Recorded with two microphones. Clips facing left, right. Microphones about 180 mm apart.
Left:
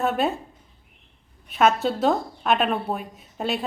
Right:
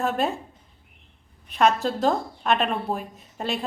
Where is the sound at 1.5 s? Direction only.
Centre (ahead or behind).